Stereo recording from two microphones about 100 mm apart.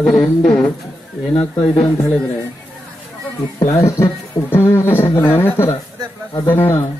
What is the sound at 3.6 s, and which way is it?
Speech, 30° left (ahead or behind).